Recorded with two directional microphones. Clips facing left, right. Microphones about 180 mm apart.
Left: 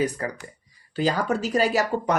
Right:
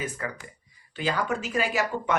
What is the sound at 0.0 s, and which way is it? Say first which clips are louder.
Speech: left 7 dB; 35° left (ahead or behind).